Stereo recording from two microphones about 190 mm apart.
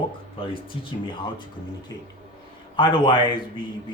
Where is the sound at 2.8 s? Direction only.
25° left (ahead or behind).